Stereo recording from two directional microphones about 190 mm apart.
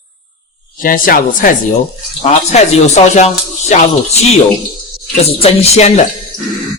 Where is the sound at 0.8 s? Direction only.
45° left (ahead or behind).